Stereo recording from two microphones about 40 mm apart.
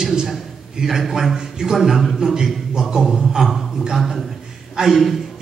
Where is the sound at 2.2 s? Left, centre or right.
Centre.